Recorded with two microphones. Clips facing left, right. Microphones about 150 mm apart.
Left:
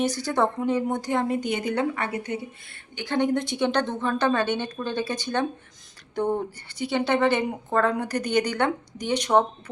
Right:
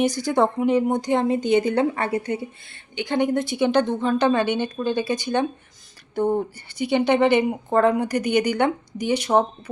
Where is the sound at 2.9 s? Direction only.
15° right (ahead or behind).